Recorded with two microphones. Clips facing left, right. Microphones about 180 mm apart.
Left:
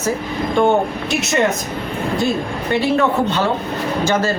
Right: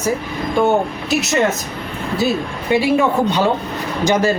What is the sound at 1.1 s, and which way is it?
Speech, centre (ahead or behind).